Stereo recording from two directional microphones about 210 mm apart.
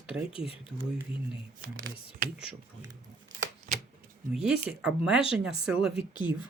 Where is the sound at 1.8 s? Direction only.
40° right (ahead or behind).